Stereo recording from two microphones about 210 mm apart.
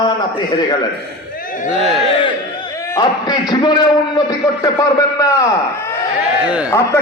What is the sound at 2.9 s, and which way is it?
A man's voice, 20° left (ahead or behind).